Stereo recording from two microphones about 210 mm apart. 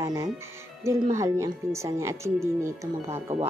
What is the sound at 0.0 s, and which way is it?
A woman's voice, 15° right (ahead or behind).